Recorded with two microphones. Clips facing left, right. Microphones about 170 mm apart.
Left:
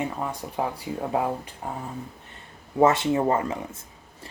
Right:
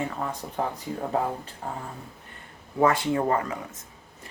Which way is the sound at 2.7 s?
25° left (ahead or behind).